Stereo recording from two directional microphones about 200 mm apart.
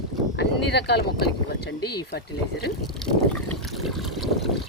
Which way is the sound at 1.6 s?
55° left (ahead or behind).